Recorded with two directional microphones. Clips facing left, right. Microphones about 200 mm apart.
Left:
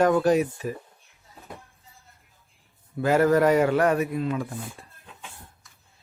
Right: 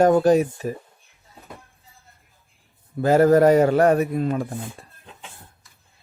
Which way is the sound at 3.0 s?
35° right (ahead or behind).